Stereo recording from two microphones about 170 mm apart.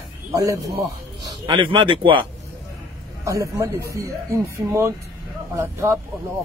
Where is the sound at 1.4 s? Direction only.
30° right (ahead or behind).